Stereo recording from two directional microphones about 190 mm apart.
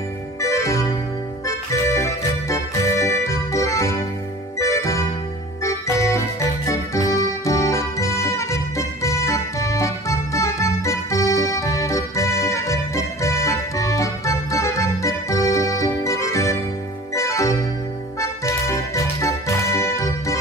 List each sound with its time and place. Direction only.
0.4 s organ: 15° left (ahead or behind)
1.4 s music: 15° left (ahead or behind)
5.6 s organ: 15° left (ahead or behind)
18.7 s music: 15° left (ahead or behind)